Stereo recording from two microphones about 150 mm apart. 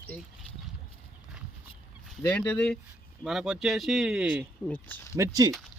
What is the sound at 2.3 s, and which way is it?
Speech, 5° left (ahead or behind).